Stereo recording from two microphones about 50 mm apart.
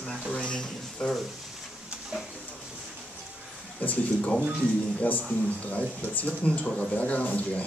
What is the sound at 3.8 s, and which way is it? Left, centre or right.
A man's voice, left.